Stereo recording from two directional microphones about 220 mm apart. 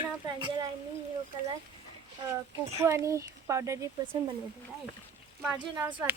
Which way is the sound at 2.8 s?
15° right (ahead or behind).